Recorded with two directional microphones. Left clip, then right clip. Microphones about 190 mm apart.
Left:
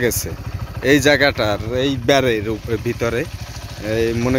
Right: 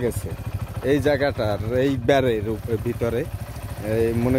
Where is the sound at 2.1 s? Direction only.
Centre (ahead or behind).